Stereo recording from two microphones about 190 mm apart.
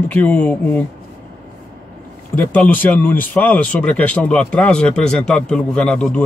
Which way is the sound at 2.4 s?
10° left (ahead or behind).